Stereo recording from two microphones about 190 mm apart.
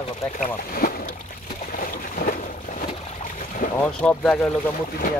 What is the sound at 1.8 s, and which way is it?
Boat, 50° left (ahead or behind).